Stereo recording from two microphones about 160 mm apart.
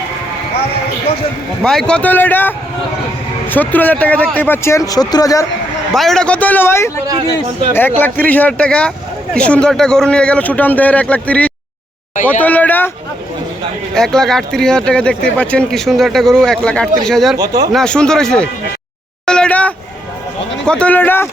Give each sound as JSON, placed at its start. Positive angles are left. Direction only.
{"t": 1.6, "sound": "a man's voice", "side_deg": 5}
{"t": 5.9, "sound": "a man's voice", "side_deg": 0}
{"t": 13.9, "sound": "speech", "side_deg": 5}
{"t": 17.3, "sound": "speech", "side_deg": -25}
{"t": 17.7, "sound": "speech", "side_deg": 5}
{"t": 19.2, "sound": "a sound", "side_deg": 5}
{"t": 20.7, "sound": "a man's voice", "side_deg": 5}